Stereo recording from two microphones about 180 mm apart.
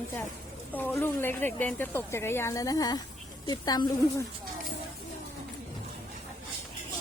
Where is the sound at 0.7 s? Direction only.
10° left (ahead or behind).